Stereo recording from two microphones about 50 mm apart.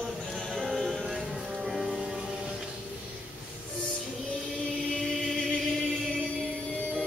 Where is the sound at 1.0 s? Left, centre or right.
Centre.